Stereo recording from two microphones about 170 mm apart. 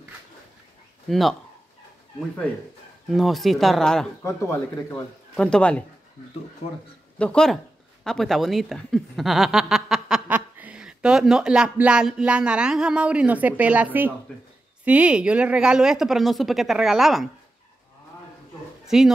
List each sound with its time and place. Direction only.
1.0 s speech: centre (ahead or behind)
3.1 s speech: centre (ahead or behind)
4.2 s speech: 15° left (ahead or behind)
5.3 s speech: 5° left (ahead or behind)
7.2 s a woman's voice: 5° left (ahead or behind)
18.9 s speech: centre (ahead or behind)